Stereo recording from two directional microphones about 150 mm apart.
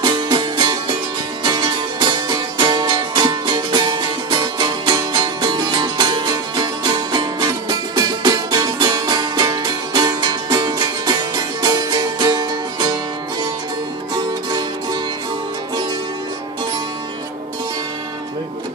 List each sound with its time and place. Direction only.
0.0 s music: 25° right (ahead or behind)